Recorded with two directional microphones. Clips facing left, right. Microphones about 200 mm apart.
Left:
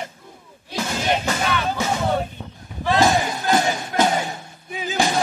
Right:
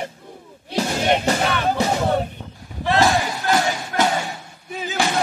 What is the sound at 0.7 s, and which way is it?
Music, 35° right (ahead or behind).